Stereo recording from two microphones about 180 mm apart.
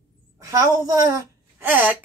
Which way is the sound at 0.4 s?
20° right (ahead or behind).